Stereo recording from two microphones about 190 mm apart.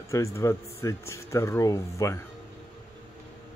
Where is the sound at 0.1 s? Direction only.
15° left (ahead or behind).